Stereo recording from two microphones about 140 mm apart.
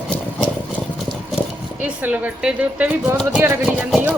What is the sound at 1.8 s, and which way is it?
Speech, 10° right (ahead or behind).